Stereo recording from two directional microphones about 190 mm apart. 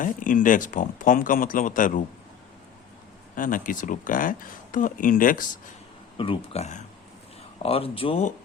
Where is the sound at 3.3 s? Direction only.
45° left (ahead or behind).